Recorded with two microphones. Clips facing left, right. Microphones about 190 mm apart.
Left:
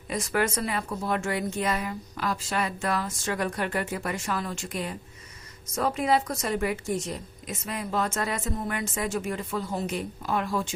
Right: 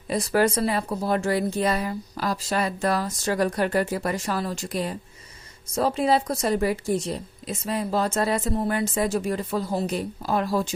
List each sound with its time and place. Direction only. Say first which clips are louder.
0.1 s a woman's voice: right 5 dB; 35° right (ahead or behind)